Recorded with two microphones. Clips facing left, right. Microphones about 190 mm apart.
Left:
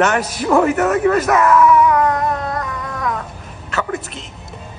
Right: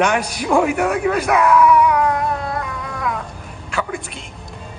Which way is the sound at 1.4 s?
Centre (ahead or behind).